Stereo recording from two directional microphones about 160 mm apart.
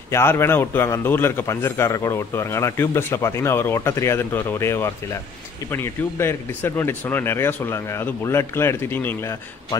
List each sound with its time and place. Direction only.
0.1 s a man's voice: 15° left (ahead or behind)